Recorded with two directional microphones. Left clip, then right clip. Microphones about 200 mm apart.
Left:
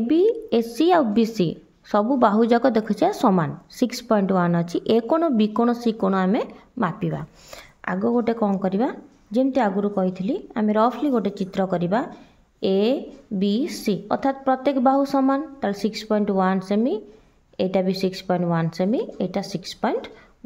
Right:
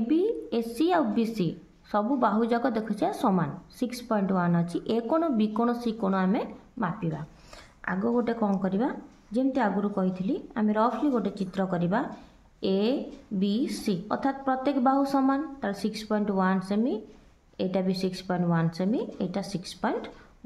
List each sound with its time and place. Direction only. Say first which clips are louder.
0.1 s a woman's voice: left 8 dB; 35° left (ahead or behind)